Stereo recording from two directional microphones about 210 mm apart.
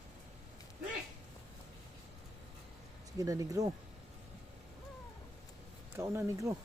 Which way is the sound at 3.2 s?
15° right (ahead or behind).